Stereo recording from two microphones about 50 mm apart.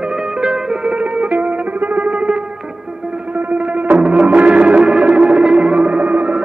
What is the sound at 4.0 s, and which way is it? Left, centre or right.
Music, right.